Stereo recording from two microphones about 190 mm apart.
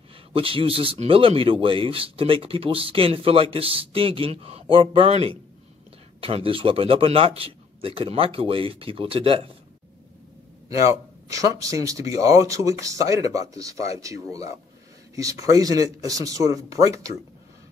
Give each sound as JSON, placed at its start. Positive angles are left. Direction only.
{"t": 0.3, "sound": "speech", "side_deg": -30}
{"t": 10.7, "sound": "speech", "side_deg": -15}